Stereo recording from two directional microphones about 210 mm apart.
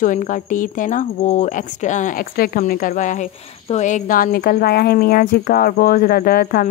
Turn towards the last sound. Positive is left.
turn(degrees=45)  # may be behind; listen again after turning